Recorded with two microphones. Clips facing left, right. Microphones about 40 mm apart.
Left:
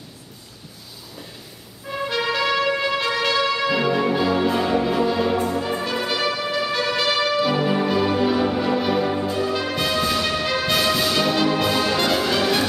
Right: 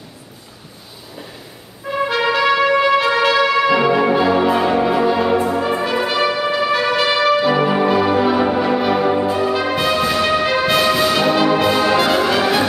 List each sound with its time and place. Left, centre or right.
1.9 s brass instrument: centre
7.0 s music: centre